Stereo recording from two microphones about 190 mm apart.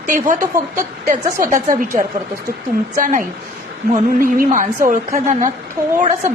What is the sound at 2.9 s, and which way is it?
A woman's voice, 45° right (ahead or behind).